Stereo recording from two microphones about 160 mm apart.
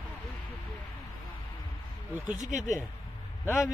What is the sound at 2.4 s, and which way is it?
Speech, 50° right (ahead or behind).